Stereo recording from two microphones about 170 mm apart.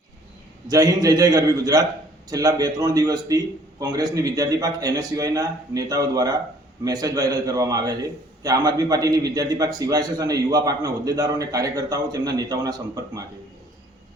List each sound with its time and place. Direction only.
0.7 s a man's voice: 20° right (ahead or behind)